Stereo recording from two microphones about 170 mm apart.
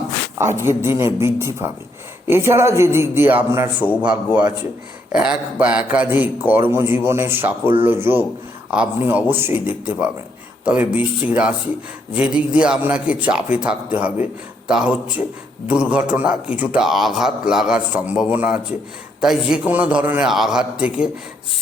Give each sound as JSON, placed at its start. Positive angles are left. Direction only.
{"t": 0.3, "sound": "a man's voice", "side_deg": -15}
{"t": 5.1, "sound": "a man's voice", "side_deg": -5}